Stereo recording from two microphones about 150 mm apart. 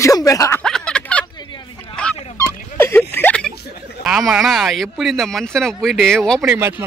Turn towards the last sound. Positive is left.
turn(degrees=5)  # may be behind; listen again after turning